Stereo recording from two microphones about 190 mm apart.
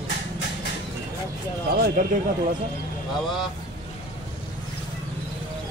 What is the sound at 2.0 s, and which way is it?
Speech, 45° right (ahead or behind).